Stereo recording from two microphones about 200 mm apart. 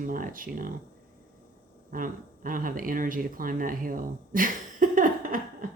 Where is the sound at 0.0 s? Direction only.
45° right (ahead or behind).